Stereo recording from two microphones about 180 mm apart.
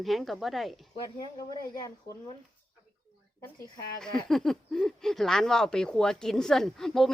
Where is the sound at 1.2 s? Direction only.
20° left (ahead or behind).